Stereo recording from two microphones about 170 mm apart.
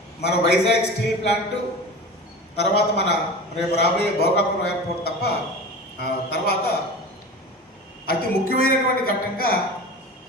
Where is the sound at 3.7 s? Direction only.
70° left (ahead or behind).